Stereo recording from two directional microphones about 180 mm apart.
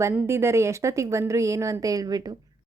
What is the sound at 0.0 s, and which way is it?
A woman's voice, 15° right (ahead or behind).